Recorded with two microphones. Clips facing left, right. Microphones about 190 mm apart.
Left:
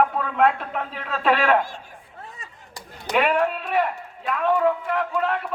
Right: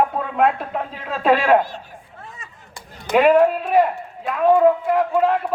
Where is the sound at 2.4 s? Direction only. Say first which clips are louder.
Right 1 dB; 40° left (ahead or behind).